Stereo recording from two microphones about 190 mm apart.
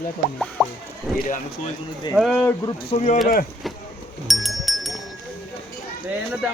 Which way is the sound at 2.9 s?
40° left (ahead or behind).